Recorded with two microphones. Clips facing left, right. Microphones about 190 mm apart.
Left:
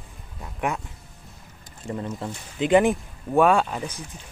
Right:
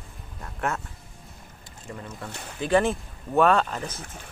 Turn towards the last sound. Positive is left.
turn(degrees=10)  # may be behind; listen again after turning